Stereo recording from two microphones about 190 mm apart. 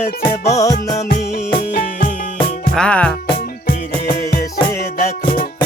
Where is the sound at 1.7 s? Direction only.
50° left (ahead or behind).